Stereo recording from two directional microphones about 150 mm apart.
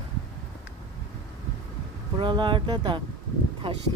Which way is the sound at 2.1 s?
30° right (ahead or behind).